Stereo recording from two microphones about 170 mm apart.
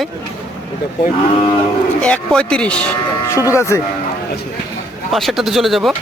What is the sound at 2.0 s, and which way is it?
Speech, 5° left (ahead or behind).